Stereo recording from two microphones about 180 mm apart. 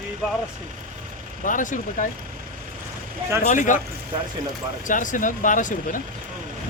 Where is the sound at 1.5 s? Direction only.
45° left (ahead or behind).